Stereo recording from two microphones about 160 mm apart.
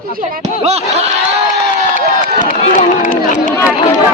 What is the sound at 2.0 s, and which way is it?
Speech, 70° right (ahead or behind).